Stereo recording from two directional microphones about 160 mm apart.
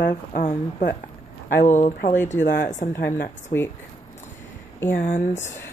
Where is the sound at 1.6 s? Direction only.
50° left (ahead or behind).